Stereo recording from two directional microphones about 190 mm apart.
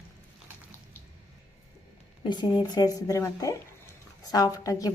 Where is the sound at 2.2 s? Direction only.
25° left (ahead or behind).